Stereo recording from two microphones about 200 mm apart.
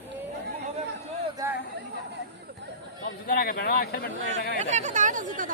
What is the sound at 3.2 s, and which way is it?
Speech, 50° left (ahead or behind).